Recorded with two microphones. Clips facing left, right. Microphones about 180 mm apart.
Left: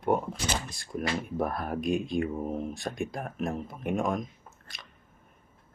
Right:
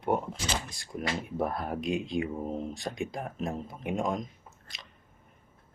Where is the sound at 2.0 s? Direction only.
50° left (ahead or behind).